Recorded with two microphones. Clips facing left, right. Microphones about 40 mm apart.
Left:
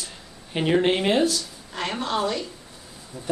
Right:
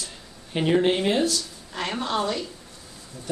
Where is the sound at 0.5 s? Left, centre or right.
Centre.